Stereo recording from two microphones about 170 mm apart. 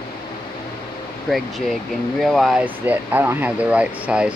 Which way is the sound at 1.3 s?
Centre (ahead or behind).